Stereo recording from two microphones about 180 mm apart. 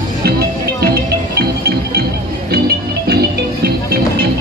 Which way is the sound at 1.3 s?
65° right (ahead or behind).